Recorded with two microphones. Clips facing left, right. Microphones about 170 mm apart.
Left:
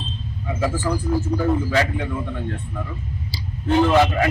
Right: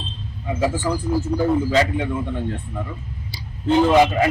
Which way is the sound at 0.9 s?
15° right (ahead or behind).